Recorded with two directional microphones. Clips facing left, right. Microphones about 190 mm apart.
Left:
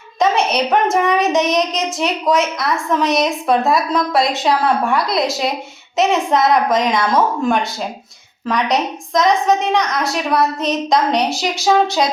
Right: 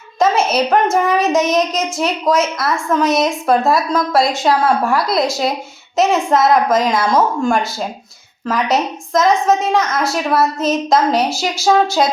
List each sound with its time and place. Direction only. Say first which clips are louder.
0.2 s a woman's voice: right 1 dB; centre (ahead or behind)